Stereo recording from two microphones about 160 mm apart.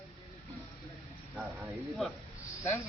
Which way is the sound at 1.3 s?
5° right (ahead or behind).